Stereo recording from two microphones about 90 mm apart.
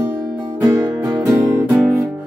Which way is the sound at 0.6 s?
30° right (ahead or behind).